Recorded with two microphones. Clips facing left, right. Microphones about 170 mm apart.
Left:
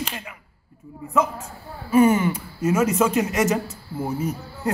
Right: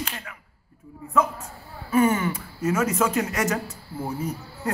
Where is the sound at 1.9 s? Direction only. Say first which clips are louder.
Left 4 dB; 25° left (ahead or behind).